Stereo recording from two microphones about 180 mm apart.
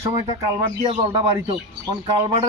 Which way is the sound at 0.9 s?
30° right (ahead or behind).